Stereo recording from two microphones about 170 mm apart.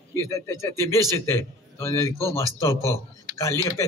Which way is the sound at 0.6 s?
15° left (ahead or behind).